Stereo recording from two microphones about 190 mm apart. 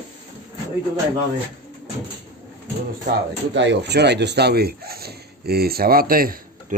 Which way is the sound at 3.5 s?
70° right (ahead or behind).